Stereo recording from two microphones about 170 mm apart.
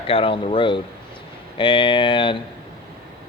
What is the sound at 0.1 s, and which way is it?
A man's voice, 30° left (ahead or behind).